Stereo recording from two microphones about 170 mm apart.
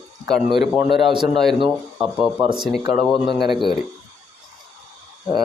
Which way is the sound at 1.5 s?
30° right (ahead or behind).